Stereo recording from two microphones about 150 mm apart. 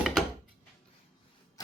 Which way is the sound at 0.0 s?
Centre (ahead or behind).